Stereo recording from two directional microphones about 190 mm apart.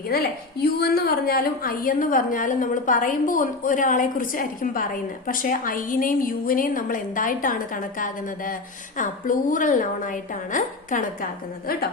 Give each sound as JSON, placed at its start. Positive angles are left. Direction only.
{"t": 0.1, "sound": "a woman's voice", "side_deg": 55}